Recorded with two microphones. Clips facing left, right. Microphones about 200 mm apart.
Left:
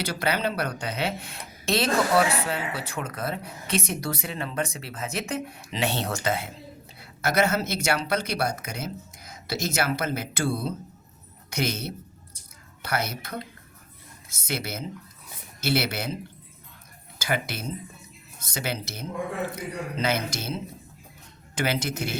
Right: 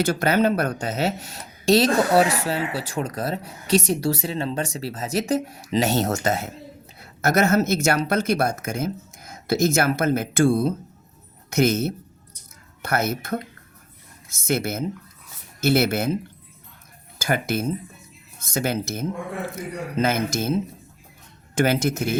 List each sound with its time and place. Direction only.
0.0 s speech: 45° right (ahead or behind)
14.4 s speech: 50° right (ahead or behind)
17.2 s speech: 45° right (ahead or behind)